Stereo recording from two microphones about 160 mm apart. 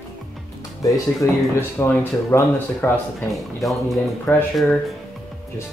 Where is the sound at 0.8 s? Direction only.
20° left (ahead or behind).